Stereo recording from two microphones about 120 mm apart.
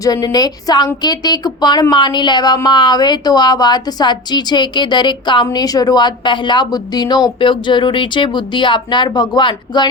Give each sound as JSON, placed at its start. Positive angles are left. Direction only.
{"t": 0.0, "sound": "a woman's voice", "side_deg": 35}